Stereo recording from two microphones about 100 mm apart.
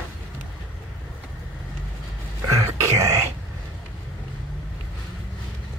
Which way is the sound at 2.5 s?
30° right (ahead or behind).